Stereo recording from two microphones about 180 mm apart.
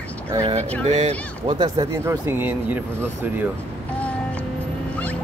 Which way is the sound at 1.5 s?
20° right (ahead or behind).